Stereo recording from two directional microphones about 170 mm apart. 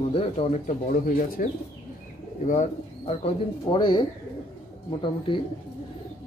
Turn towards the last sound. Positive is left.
turn(degrees=30)  # may be behind; listen again after turning